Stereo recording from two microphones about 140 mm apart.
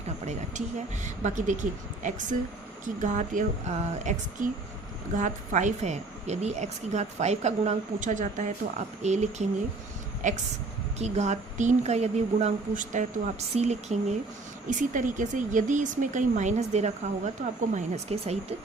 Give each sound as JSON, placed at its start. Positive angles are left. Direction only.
{"t": 1.0, "sound": "speech", "side_deg": -60}
{"t": 10.9, "sound": "a woman's voice", "side_deg": -50}
{"t": 13.6, "sound": "a woman's voice", "side_deg": -55}
{"t": 14.7, "sound": "speech", "side_deg": -65}